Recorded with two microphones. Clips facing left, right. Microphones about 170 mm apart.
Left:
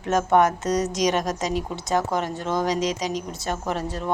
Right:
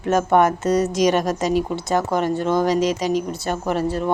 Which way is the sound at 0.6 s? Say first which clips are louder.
Right 5 dB; 55° right (ahead or behind).